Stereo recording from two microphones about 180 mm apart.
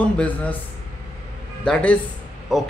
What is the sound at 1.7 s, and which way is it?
Speech, 5° left (ahead or behind).